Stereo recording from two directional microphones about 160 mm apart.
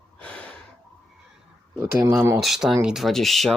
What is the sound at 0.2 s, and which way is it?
Gasp, 5° left (ahead or behind).